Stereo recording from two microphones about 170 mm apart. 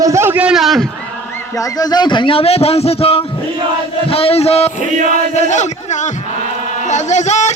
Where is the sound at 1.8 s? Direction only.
25° left (ahead or behind); by 5.6 s 45° left (ahead or behind).